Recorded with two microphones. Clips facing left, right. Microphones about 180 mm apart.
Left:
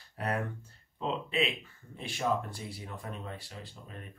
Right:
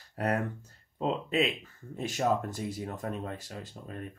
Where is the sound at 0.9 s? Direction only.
45° right (ahead or behind).